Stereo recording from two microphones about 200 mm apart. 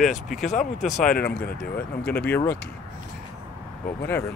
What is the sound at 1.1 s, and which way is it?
Speech, 50° left (ahead or behind).